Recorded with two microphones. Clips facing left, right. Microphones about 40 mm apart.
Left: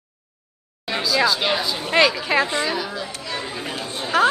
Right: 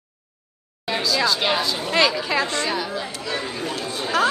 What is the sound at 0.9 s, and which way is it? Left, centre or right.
Speech, centre.